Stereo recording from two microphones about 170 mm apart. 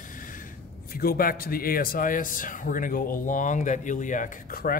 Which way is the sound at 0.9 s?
60° left (ahead or behind).